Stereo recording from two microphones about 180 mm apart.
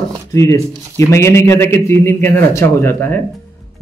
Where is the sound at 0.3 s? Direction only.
15° left (ahead or behind).